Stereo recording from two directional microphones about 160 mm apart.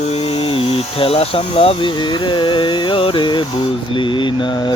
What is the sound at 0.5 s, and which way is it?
Speech, 35° left (ahead or behind).